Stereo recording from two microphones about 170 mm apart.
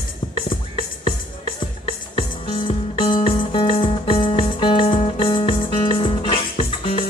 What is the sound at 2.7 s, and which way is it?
Music, 30° left (ahead or behind).